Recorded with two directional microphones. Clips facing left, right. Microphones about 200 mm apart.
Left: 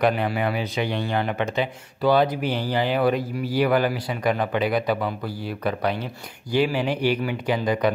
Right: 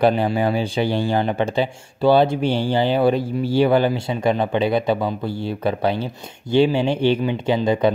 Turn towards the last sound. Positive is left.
turn(degrees=-25)  # may be behind; listen again after turning